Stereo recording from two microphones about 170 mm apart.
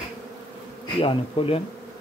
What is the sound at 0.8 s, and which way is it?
Bee, 30° left (ahead or behind).